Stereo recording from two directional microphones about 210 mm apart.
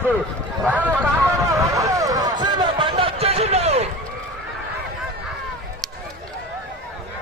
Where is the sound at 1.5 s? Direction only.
15° right (ahead or behind); by 3.9 s 30° right (ahead or behind).